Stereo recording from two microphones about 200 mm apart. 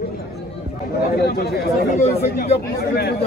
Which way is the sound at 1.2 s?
55° left (ahead or behind).